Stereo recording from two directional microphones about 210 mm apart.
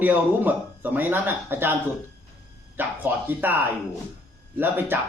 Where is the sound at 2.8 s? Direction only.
10° right (ahead or behind).